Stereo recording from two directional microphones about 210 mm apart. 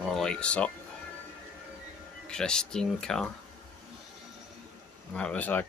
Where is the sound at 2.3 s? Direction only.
5° left (ahead or behind).